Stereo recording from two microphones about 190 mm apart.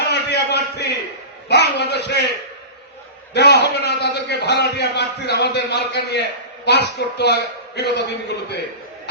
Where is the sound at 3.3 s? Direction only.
60° left (ahead or behind).